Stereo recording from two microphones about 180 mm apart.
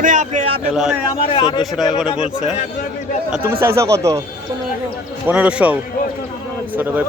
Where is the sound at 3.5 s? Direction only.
15° right (ahead or behind).